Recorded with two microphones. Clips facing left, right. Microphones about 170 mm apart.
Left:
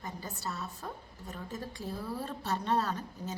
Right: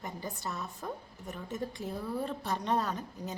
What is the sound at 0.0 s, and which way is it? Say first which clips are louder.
A woman's voice: right 1 dB; 20° right (ahead or behind).